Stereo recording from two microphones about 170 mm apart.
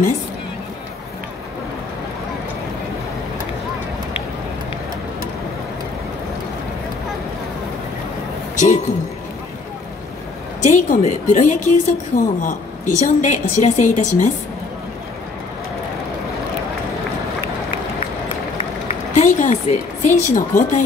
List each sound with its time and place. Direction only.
8.5 s speech: 45° left (ahead or behind)
10.6 s a woman's voice: 45° left (ahead or behind)
19.1 s speech: 45° left (ahead or behind)